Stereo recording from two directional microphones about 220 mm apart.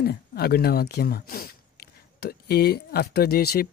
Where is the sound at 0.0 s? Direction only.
45° left (ahead or behind).